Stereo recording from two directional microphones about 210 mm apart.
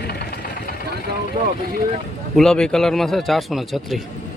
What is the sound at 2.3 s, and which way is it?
Speech, centre (ahead or behind).